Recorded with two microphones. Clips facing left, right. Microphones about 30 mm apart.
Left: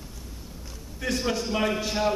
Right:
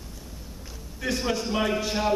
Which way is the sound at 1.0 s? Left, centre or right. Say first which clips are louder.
Even; centre.